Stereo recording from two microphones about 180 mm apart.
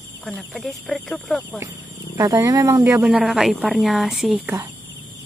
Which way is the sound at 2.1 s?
20° right (ahead or behind).